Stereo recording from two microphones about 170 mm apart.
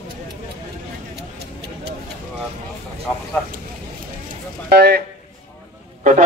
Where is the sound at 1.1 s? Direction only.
80° right.